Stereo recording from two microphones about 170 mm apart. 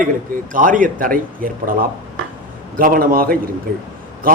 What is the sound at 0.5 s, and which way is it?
A man's voice, 55° right (ahead or behind).